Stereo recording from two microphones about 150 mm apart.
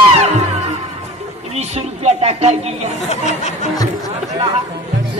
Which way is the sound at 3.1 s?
50° left (ahead or behind).